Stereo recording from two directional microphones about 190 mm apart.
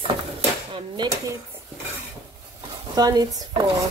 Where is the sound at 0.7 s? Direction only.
20° right (ahead or behind).